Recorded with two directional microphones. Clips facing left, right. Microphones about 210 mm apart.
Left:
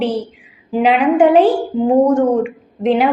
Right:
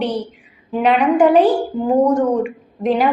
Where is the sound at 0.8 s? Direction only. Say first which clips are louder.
Left 2 dB; 5° left (ahead or behind).